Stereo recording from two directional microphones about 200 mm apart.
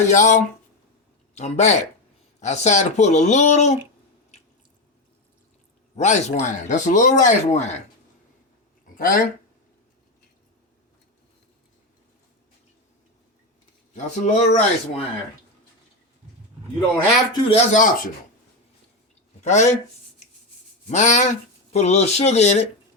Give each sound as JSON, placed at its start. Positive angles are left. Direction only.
{"t": 0.1, "sound": "speech", "side_deg": 35}
{"t": 6.0, "sound": "speech", "side_deg": 35}
{"t": 9.0, "sound": "speech", "side_deg": 45}
{"t": 13.9, "sound": "speech", "side_deg": 35}
{"t": 17.3, "sound": "speech", "side_deg": 35}
{"t": 19.4, "sound": "speech", "side_deg": 35}
{"t": 20.9, "sound": "speech", "side_deg": 35}